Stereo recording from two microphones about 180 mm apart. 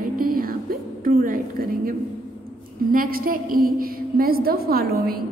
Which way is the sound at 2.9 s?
50° right (ahead or behind).